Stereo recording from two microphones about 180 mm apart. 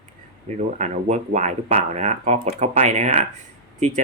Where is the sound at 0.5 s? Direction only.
40° right (ahead or behind).